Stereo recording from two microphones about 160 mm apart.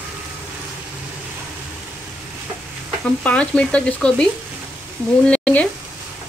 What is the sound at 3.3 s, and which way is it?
Speech, 5° left (ahead or behind).